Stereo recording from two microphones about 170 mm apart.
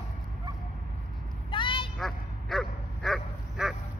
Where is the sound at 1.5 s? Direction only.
30° left (ahead or behind).